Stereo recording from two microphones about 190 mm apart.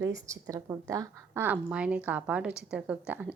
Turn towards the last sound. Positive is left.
turn(degrees=-5)  # may be behind; listen again after turning